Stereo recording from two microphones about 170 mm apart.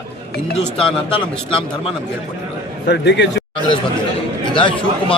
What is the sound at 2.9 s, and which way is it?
Speech, 90° left.